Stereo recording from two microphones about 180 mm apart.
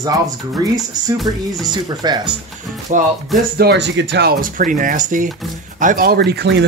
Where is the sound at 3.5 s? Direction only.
65° right (ahead or behind).